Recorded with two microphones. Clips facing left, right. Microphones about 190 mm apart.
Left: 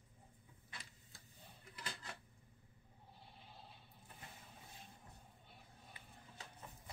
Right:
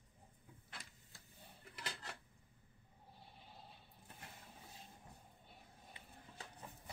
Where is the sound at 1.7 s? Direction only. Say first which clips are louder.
Right 1 dB; 70° right (ahead or behind).